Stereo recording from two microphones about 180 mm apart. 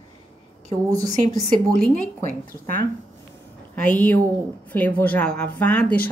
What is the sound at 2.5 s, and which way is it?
Speech, 15° left (ahead or behind).